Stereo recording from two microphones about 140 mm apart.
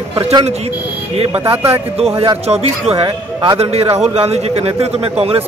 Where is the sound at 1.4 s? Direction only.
20° right (ahead or behind).